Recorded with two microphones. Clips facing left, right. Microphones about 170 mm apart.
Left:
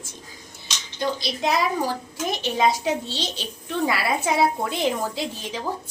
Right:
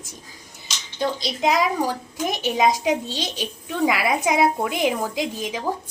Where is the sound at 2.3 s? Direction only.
15° right (ahead or behind).